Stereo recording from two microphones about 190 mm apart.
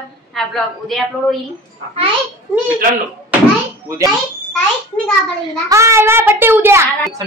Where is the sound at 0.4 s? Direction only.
Centre (ahead or behind).